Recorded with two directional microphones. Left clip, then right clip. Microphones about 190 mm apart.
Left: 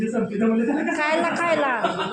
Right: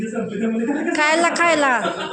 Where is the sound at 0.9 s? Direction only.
25° right (ahead or behind).